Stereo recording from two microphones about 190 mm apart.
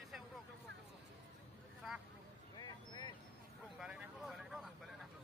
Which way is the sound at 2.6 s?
20° left (ahead or behind).